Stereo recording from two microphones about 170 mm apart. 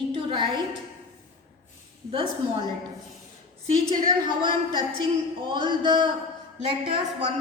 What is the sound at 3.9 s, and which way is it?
A woman's voice, 25° right (ahead or behind).